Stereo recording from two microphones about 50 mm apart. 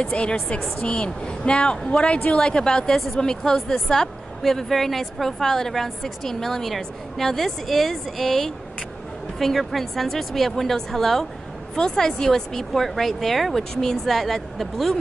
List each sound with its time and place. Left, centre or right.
0.0 s a woman's voice: centre